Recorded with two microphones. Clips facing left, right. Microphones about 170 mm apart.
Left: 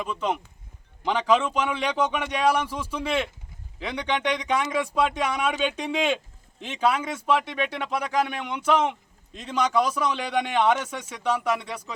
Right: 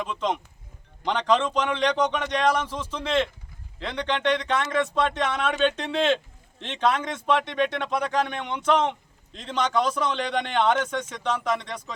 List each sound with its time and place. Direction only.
0.0 s speech: 10° left (ahead or behind)